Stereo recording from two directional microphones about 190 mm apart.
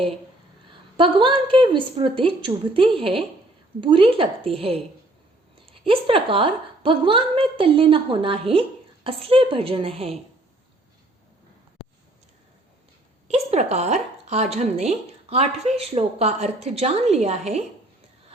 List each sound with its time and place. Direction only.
0.9 s a woman's voice: 25° right (ahead or behind)
13.2 s speech: 35° right (ahead or behind)